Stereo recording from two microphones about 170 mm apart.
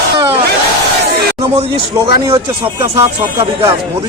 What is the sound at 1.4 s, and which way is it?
Speech, 35° right (ahead or behind).